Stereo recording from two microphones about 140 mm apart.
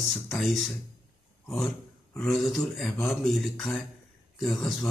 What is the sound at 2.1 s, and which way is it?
Speech, centre (ahead or behind).